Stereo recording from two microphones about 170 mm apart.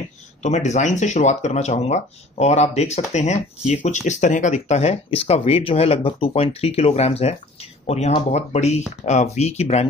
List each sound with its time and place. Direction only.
0.4 s speech: 45° left (ahead or behind)